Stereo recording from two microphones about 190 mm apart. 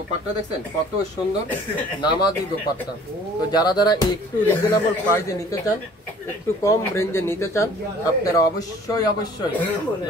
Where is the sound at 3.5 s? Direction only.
20° left (ahead or behind).